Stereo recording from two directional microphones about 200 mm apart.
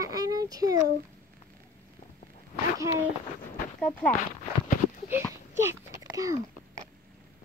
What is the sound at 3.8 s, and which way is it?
Speech, 5° left (ahead or behind).